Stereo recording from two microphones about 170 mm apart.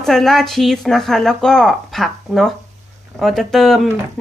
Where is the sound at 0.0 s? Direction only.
Centre (ahead or behind).